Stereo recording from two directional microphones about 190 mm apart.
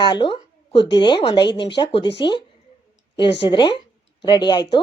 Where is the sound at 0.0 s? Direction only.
25° left (ahead or behind).